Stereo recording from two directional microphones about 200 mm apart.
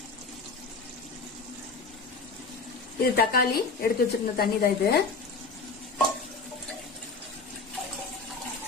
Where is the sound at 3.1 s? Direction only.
50° left (ahead or behind).